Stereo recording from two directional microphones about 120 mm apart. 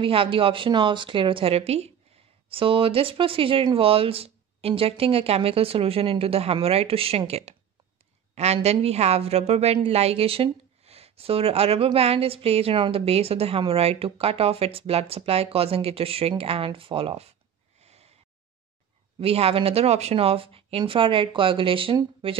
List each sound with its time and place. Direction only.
0.0 s a woman's voice: 45° right (ahead or behind)
8.6 s a woman's voice: 65° right (ahead or behind)
17.8 s snort: 60° right (ahead or behind)
19.1 s a woman's voice: 55° right (ahead or behind)